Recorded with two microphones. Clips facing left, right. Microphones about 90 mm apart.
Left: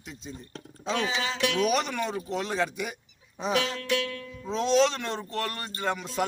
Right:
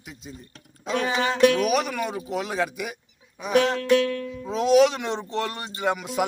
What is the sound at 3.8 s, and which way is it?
Music, 40° right (ahead or behind).